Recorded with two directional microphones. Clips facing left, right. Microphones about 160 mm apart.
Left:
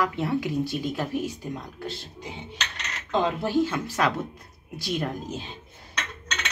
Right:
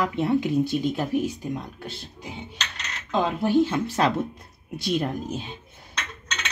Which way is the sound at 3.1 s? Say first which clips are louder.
Right 2 dB; 15° right (ahead or behind).